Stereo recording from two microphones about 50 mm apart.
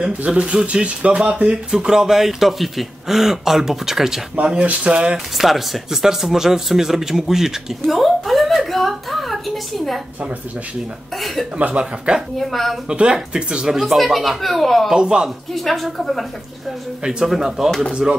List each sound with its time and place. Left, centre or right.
0.0 s speech: centre
4.4 s speech: right
5.4 s speech: centre
7.8 s a sound: centre
11.1 s a woman's voice: centre
11.5 s speech: right
12.4 s a woman's voice: centre
12.8 s a woman's voice: centre
14.9 s speech: centre
15.5 s a woman's voice: centre
17.0 s speech: centre